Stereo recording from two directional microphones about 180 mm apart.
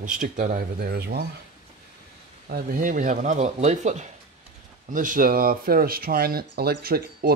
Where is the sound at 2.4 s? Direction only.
55° right (ahead or behind).